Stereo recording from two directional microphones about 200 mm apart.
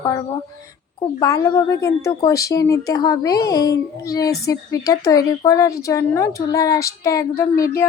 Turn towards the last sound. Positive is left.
turn(degrees=15)  # may be behind; listen again after turning